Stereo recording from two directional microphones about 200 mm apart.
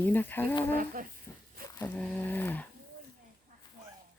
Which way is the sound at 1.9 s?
5° left (ahead or behind).